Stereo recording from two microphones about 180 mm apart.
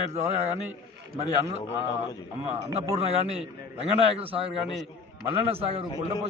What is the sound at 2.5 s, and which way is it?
Speech, 35° right (ahead or behind).